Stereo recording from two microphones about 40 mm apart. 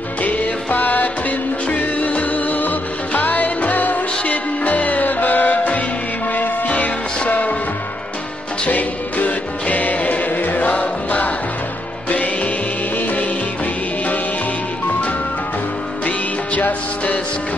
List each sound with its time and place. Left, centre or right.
0.2 s music: left
8.6 s music: left
16.1 s music: left